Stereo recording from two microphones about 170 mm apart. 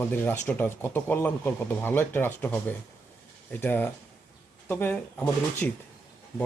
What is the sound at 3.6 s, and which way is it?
Speech, 10° left (ahead or behind).